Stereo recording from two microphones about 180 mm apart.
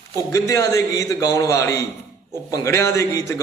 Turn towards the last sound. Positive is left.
turn(degrees=15)  # may be behind; listen again after turning